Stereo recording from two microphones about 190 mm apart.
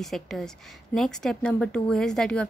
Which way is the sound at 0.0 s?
Centre (ahead or behind).